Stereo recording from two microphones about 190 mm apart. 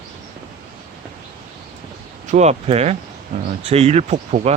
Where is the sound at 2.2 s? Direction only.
40° right (ahead or behind).